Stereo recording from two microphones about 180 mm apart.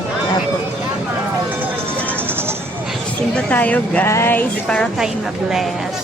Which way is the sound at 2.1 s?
10° right (ahead or behind).